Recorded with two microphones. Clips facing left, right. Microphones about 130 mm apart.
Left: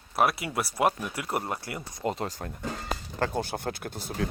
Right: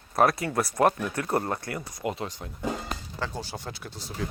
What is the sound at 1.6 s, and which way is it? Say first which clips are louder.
Speech: right 3 dB; 20° left (ahead or behind).